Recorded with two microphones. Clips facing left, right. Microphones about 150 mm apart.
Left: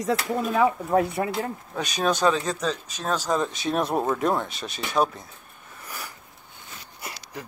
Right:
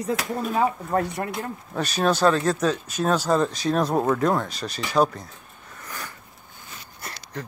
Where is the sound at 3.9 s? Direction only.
10° left (ahead or behind).